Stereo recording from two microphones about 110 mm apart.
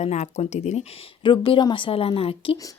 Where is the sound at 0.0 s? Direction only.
85° left.